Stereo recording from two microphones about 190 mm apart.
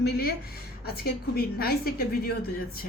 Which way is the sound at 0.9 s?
55° left (ahead or behind).